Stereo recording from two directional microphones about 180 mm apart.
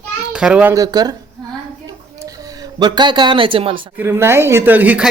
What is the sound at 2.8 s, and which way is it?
Speech, 25° right (ahead or behind).